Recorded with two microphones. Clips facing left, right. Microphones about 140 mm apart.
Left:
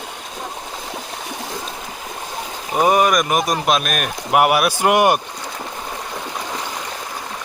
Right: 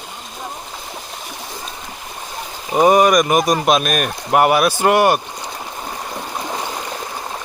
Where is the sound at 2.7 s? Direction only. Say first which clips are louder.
Right 3 dB; centre (ahead or behind); by 5.2 s 15° left (ahead or behind).